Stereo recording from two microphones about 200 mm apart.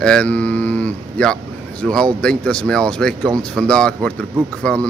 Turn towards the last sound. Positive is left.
turn(degrees=5)  # may be behind; listen again after turning